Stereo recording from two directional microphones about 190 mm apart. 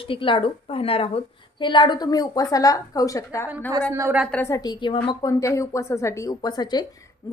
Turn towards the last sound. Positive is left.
turn(degrees=20)  # may be behind; listen again after turning